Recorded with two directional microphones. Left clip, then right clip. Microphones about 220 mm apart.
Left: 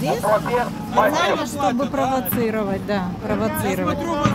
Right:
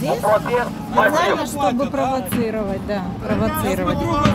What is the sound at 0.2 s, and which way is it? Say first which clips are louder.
Music: right 2 dB; 50° right (ahead or behind).